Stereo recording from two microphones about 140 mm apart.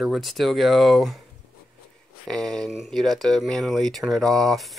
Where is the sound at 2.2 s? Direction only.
5° left (ahead or behind).